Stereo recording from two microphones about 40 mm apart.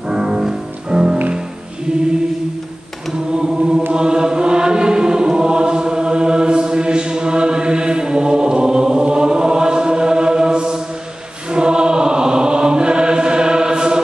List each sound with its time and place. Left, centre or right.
0.1 s music: centre
3.9 s chant: centre
11.5 s choir: right